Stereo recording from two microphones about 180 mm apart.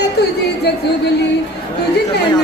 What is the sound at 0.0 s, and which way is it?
Speech, 65° left (ahead or behind).